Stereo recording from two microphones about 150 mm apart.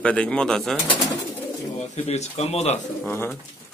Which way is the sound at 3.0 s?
15° left (ahead or behind).